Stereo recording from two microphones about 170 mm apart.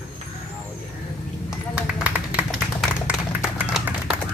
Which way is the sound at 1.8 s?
5° right (ahead or behind).